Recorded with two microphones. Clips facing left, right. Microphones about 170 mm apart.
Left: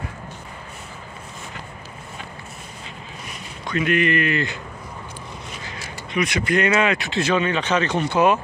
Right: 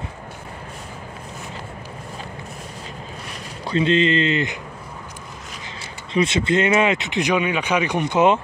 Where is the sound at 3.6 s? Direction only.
25° right (ahead or behind).